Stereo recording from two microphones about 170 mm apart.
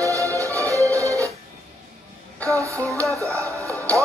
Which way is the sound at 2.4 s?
20° right (ahead or behind).